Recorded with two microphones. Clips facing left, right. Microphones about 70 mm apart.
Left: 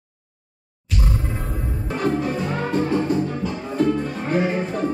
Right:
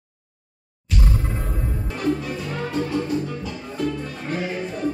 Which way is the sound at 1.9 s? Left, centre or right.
Left.